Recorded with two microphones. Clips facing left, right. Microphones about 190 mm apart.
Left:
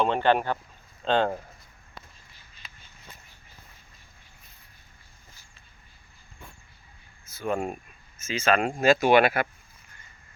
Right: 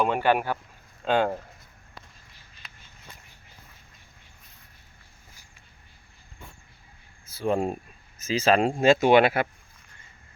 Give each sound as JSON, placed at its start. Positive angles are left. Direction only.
{"t": 0.0, "sound": "speech", "side_deg": -10}
{"t": 2.6, "sound": "a sound", "side_deg": 0}
{"t": 7.3, "sound": "speech", "side_deg": -30}